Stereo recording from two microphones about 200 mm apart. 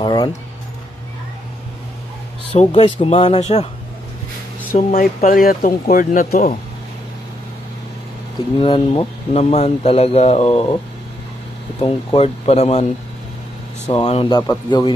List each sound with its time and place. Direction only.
0.0 s a sound: 20° left (ahead or behind)
2.7 s speech: 30° left (ahead or behind)
4.7 s speech: 45° left (ahead or behind)
8.5 s speech: 25° left (ahead or behind)
11.8 s speech: 25° left (ahead or behind)
13.8 s speech: 30° left (ahead or behind)
14.4 s speech: 20° left (ahead or behind)